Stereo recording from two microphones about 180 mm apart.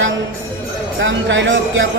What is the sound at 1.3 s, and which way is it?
Speech, 90° right.